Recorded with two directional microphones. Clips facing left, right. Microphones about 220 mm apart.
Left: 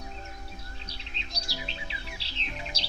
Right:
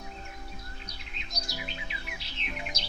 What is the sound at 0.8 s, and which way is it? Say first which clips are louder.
Bird: left 1 dB; 30° left (ahead or behind).